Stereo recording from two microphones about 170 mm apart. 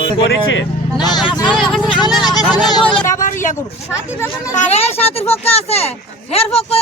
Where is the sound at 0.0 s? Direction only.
90° left.